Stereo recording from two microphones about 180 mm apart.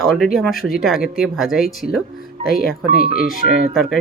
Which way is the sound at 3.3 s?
Centre (ahead or behind).